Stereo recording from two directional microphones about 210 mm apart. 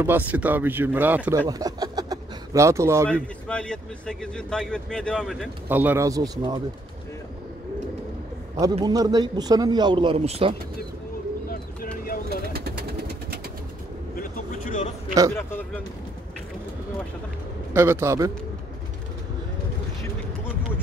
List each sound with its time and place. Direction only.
0.0 s speech: 10° right (ahead or behind)
1.5 s a sound: 15° right (ahead or behind)
3.1 s a man's voice: 5° left (ahead or behind)
5.7 s speech: 10° right (ahead or behind)
8.7 s speech: 20° right (ahead or behind)
12.3 s bird: 45° right (ahead or behind)
14.1 s vehicle: 40° left (ahead or behind)
15.3 s speech: 10° left (ahead or behind)
17.7 s speech: 10° right (ahead or behind)